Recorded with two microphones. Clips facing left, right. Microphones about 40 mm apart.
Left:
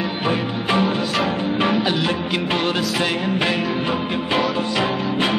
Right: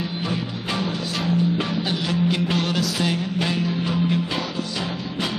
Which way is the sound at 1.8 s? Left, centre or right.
Centre.